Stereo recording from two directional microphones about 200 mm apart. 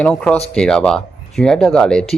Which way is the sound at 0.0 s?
5° left (ahead or behind).